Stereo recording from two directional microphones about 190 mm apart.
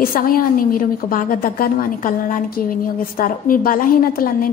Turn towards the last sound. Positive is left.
turn(degrees=50)  # may be behind; listen again after turning